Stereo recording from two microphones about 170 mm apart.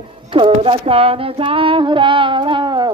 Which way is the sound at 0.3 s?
30° right (ahead or behind).